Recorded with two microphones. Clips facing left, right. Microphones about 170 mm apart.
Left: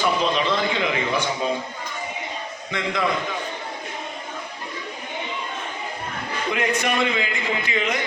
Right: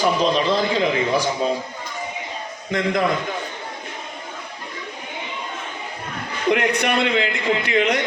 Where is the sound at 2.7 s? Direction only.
40° right (ahead or behind).